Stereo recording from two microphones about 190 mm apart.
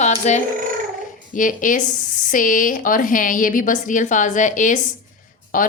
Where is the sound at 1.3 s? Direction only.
45° left (ahead or behind).